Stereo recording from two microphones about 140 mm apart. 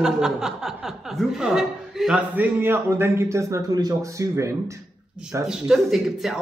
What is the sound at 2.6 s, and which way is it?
A man's voice, 15° right (ahead or behind).